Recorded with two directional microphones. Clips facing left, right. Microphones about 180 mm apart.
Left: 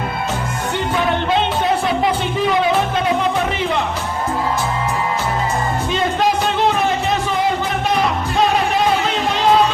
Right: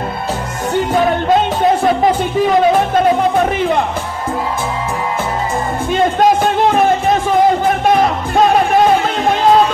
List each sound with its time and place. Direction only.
5.9 s music: 50° right (ahead or behind)